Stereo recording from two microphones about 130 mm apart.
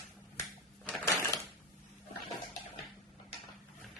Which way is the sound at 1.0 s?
20° left (ahead or behind).